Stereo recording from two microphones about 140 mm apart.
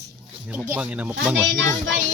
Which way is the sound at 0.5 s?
10° right (ahead or behind).